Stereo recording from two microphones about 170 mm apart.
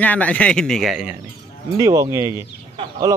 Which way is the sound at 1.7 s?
20° right (ahead or behind).